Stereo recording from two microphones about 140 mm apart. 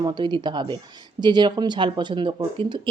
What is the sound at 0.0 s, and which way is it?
Speech, 35° right (ahead or behind).